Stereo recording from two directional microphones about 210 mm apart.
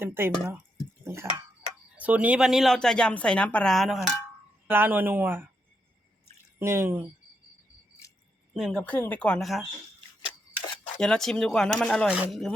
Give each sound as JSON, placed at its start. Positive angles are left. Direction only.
{"t": 0.0, "sound": "a woman's voice", "side_deg": -10}
{"t": 6.6, "sound": "speech", "side_deg": -10}
{"t": 8.0, "sound": "keys jangling", "side_deg": 15}
{"t": 8.5, "sound": "a woman's voice", "side_deg": 0}
{"t": 11.0, "sound": "a woman's voice", "side_deg": 0}